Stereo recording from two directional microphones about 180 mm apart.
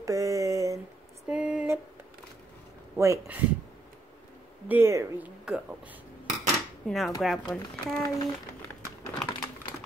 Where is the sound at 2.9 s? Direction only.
15° right (ahead or behind).